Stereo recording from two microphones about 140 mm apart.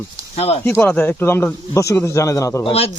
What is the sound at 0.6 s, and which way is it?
Speech, 15° left (ahead or behind).